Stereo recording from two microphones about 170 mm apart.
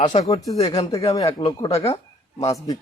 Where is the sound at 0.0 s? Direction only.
45° left (ahead or behind).